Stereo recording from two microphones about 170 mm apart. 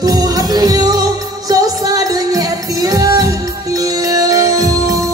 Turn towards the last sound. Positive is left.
turn(degrees=-20)  # may be behind; listen again after turning